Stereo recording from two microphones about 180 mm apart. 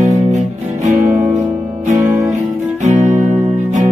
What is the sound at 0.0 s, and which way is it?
Music, 40° right (ahead or behind).